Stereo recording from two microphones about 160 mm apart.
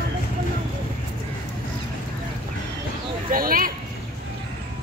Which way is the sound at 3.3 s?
65° right (ahead or behind).